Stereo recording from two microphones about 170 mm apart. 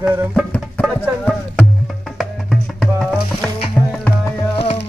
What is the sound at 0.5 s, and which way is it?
Music, 5° left (ahead or behind).